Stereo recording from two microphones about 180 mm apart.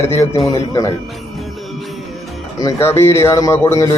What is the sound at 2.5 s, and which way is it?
Speech, 15° left (ahead or behind).